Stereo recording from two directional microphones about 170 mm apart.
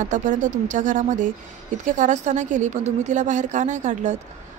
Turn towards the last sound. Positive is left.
turn(degrees=-45)  # may be behind; listen again after turning